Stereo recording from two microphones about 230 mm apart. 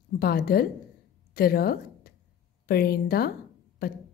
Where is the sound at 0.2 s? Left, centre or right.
Left.